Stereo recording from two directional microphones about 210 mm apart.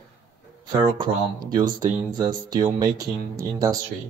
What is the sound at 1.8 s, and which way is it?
Speech, 20° right (ahead or behind).